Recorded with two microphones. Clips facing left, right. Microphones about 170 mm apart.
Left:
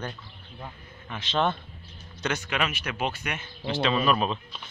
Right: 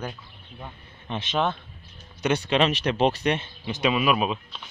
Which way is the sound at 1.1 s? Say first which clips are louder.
Right 1 dB; 25° right (ahead or behind).